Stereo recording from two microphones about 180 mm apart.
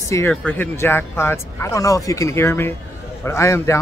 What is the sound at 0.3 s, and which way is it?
A man's voice, 10° left (ahead or behind).